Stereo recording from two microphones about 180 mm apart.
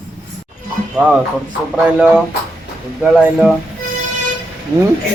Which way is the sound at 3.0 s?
10° right (ahead or behind).